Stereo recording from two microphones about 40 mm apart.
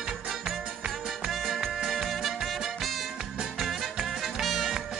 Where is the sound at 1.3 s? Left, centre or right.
Centre.